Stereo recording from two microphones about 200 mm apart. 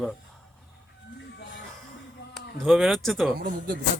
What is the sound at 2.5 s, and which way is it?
Speech, centre (ahead or behind).